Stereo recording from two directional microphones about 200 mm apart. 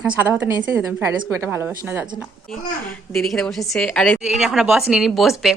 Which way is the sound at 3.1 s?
Centre (ahead or behind).